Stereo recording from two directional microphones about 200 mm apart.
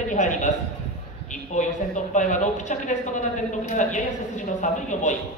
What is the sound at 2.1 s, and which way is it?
A woman's voice, 40° left (ahead or behind).